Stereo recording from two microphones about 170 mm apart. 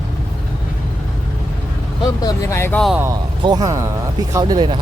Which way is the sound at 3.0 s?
20° right (ahead or behind).